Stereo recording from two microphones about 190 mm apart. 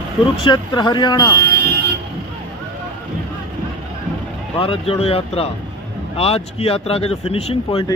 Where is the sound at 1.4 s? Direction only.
55° right (ahead or behind).